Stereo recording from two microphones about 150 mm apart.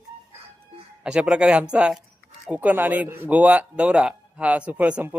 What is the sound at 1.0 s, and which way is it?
Speech, 5° right (ahead or behind).